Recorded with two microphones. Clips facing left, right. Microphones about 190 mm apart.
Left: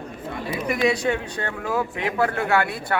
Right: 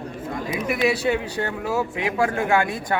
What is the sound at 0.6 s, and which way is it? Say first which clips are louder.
Speech: even; 5° right (ahead or behind).